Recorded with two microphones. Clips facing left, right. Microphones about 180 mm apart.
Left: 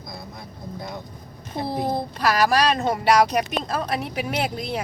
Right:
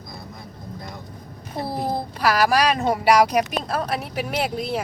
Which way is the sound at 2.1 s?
5° right (ahead or behind).